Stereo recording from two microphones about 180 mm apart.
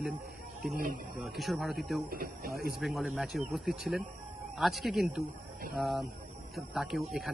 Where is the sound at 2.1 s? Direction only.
55° right (ahead or behind).